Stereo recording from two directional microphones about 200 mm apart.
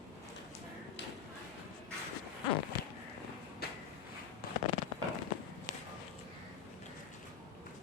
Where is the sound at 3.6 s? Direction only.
50° left (ahead or behind).